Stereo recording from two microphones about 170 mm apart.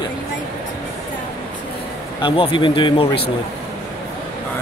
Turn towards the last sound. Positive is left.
turn(degrees=30)  # may be behind; listen again after turning